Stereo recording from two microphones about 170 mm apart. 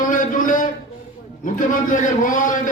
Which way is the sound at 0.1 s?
50° left (ahead or behind).